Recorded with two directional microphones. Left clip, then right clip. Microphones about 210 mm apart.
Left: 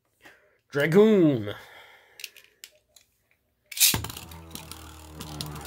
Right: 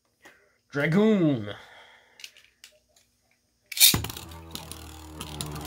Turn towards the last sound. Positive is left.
turn(degrees=-10)  # may be behind; listen again after turning